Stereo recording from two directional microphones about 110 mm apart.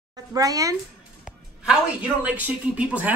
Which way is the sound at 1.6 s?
10° right (ahead or behind).